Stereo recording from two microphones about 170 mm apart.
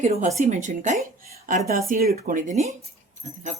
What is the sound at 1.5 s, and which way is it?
A woman's voice, 55° right (ahead or behind).